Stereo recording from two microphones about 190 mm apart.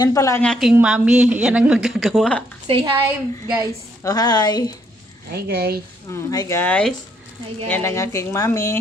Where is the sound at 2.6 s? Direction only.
25° right (ahead or behind).